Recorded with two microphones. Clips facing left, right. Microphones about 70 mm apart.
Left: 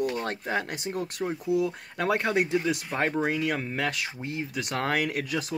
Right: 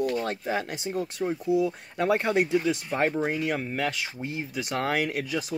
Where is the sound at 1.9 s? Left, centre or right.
Left.